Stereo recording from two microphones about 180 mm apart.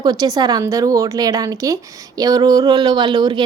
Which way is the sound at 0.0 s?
20° right (ahead or behind).